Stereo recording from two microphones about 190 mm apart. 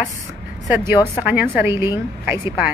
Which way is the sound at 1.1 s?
10° right (ahead or behind).